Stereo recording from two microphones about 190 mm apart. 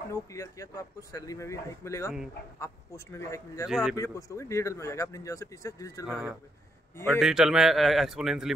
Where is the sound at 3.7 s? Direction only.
Centre (ahead or behind).